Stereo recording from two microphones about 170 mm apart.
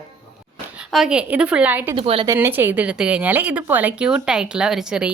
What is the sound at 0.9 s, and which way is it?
Speech, 5° right (ahead or behind).